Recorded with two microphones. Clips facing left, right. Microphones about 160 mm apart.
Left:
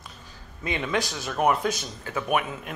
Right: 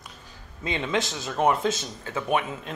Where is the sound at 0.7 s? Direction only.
25° right (ahead or behind).